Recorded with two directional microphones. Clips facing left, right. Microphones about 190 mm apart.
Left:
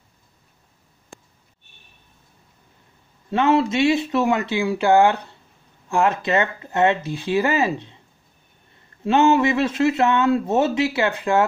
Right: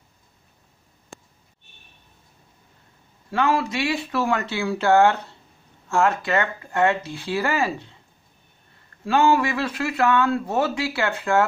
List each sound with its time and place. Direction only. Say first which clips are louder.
3.3 s speech: left 4 dB; 20° left (ahead or behind)
9.0 s speech: left 3 dB; 20° left (ahead or behind)